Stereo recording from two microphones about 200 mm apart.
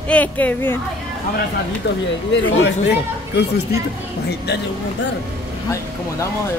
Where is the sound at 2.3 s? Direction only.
60° left (ahead or behind).